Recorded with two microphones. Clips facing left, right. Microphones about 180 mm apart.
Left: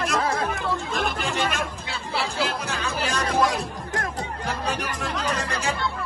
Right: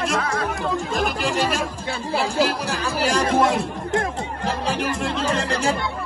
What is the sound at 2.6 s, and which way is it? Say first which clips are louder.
Speech: right 5 dB; 35° right (ahead or behind).